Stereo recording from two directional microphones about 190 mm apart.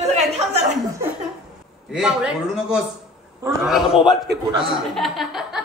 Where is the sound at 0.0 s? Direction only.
35° right (ahead or behind).